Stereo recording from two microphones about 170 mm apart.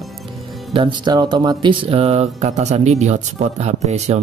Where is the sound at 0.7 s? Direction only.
30° right (ahead or behind).